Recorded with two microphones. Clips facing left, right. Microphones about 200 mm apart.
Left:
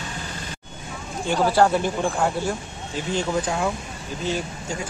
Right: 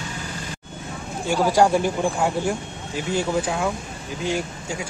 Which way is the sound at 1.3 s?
10° right (ahead or behind).